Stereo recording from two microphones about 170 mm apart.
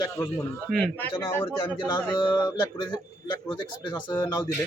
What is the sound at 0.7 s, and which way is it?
Speech, 5° left (ahead or behind).